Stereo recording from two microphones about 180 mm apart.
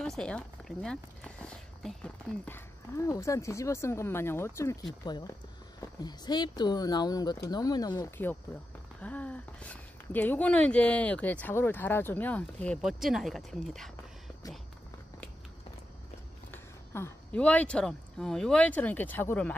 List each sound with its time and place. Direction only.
0.0 s speech: 5° left (ahead or behind)
12.8 s speech: centre (ahead or behind)
16.9 s speech: 10° left (ahead or behind)